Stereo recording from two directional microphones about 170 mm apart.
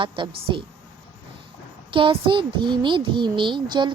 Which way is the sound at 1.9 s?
30° right (ahead or behind).